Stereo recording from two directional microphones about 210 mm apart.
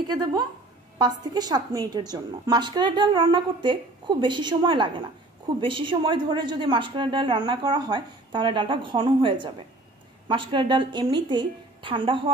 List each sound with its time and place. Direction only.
0.1 s a woman's voice: 20° right (ahead or behind)